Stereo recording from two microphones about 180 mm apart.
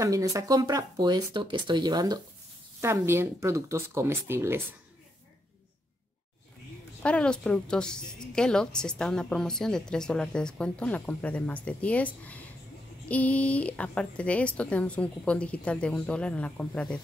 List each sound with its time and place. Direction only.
0.0 s speech: 20° right (ahead or behind)
7.0 s a woman's voice: 5° left (ahead or behind)